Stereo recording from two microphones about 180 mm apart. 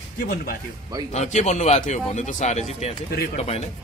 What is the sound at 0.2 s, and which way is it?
Speech, 60° left (ahead or behind).